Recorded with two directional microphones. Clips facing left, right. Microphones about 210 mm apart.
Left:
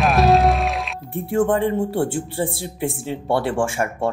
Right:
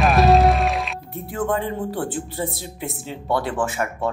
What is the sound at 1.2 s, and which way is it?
Speech, 30° left (ahead or behind).